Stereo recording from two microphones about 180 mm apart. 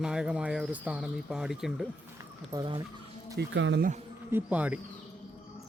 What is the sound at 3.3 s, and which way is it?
Speech, 80° right.